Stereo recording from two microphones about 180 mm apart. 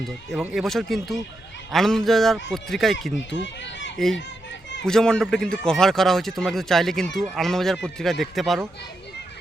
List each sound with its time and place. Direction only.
0.1 s speech: centre (ahead or behind)
3.3 s a child's voice: 90° left
3.9 s a child's voice: centre (ahead or behind)